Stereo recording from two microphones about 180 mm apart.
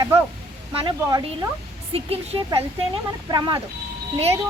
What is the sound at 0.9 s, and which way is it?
Speech, 20° right (ahead or behind).